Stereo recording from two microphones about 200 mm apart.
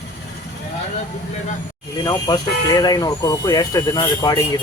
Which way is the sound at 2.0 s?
20° left (ahead or behind).